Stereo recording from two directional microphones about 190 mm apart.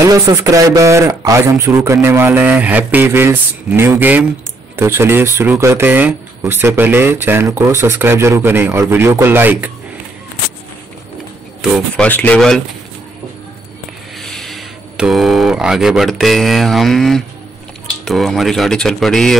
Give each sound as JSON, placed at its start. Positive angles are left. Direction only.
{"t": 0.0, "sound": "speech", "side_deg": -15}
{"t": 12.0, "sound": "speech", "side_deg": 5}
{"t": 14.1, "sound": "speech", "side_deg": 0}